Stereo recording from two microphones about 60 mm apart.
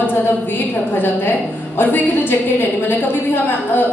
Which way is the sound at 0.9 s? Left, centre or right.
Left.